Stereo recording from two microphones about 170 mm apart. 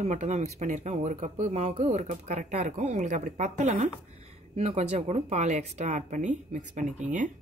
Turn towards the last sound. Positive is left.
turn(degrees=-45)  # may be behind; listen again after turning